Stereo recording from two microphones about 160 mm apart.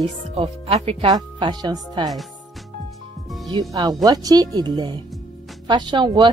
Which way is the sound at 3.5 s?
25° right (ahead or behind).